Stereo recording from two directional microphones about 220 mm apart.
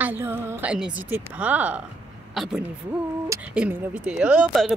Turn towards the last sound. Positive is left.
turn(degrees=-5)  # may be behind; listen again after turning